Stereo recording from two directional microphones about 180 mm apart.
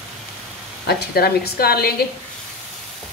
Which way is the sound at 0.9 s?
60° left (ahead or behind).